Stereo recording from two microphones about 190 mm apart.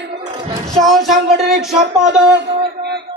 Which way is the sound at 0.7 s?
Centre (ahead or behind).